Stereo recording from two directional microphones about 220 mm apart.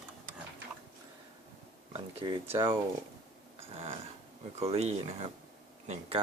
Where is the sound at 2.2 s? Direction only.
20° right (ahead or behind).